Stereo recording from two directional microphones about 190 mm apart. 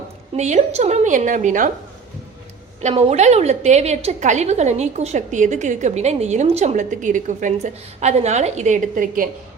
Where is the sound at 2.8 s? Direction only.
35° right (ahead or behind).